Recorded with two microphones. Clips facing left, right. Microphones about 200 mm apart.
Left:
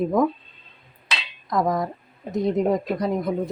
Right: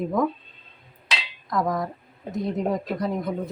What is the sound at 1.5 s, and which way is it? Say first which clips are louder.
Speech: left 3 dB; 15° left (ahead or behind).